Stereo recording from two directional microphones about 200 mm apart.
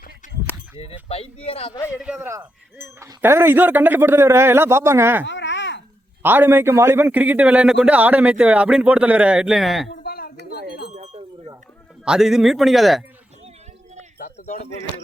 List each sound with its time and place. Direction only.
1.0 s speech: 30° left (ahead or behind)
2.0 s a man's voice: 5° right (ahead or behind)
5.2 s babbling: 65° left (ahead or behind)
6.2 s a man's voice: 10° right (ahead or behind)
9.9 s a sound: 50° left (ahead or behind)
10.5 s wind chime: 55° left (ahead or behind)
10.9 s wind chime: 35° right (ahead or behind)
12.0 s a man's voice: centre (ahead or behind)
14.2 s a sound: 40° left (ahead or behind)